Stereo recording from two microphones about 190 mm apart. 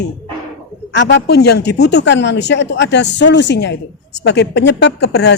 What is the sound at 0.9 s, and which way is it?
A woman's voice, 65° left (ahead or behind).